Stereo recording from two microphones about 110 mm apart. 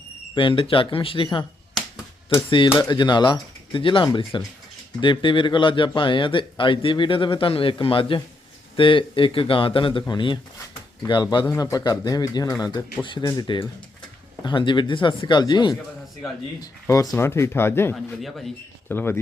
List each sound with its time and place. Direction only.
0.3 s speech: 50° left (ahead or behind)
2.7 s speech: 40° left (ahead or behind)
16.8 s speech: 30° left (ahead or behind)
17.9 s a man's voice: centre (ahead or behind)
18.9 s speech: 20° left (ahead or behind)